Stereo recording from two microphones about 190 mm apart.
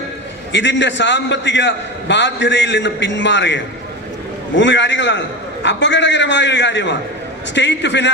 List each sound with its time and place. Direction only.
0.5 s a man's voice: 70° left (ahead or behind)